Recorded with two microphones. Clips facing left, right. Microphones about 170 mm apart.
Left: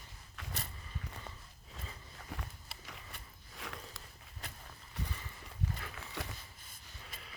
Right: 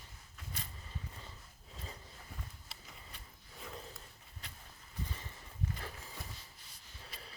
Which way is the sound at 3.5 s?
90° left.